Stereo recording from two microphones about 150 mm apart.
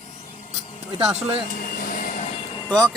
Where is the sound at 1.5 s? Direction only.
70° left (ahead or behind).